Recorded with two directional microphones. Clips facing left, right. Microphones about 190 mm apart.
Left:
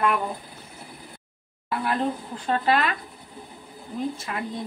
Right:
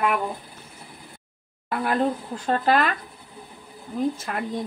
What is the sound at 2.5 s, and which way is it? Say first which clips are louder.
Speech: right 2 dB; 45° right (ahead or behind).